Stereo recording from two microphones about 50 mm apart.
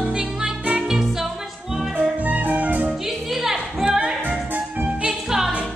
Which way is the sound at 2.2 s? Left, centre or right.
Right.